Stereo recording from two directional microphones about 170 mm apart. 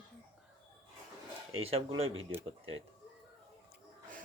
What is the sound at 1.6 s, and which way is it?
Speech, 35° right (ahead or behind).